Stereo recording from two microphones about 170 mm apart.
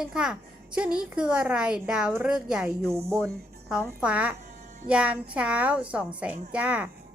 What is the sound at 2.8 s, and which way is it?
A woman's voice, 15° right (ahead or behind).